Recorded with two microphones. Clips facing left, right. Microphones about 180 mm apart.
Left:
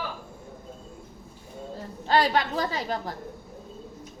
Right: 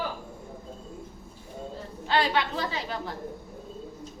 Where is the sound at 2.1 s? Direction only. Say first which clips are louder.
Left 3 dB; 40° left (ahead or behind).